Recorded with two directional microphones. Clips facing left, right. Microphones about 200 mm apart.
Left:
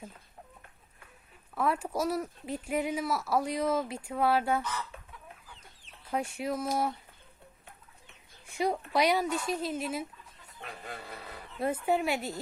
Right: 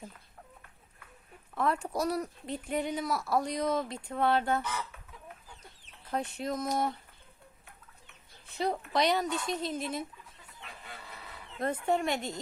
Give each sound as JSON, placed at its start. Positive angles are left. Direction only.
{"t": 1.5, "sound": "speech", "side_deg": 5}
{"t": 4.6, "sound": "speech", "side_deg": -10}
{"t": 6.1, "sound": "speech", "side_deg": 10}
{"t": 8.4, "sound": "speech", "side_deg": 10}
{"t": 10.6, "sound": "a sound", "side_deg": 50}
{"t": 11.6, "sound": "speech", "side_deg": 5}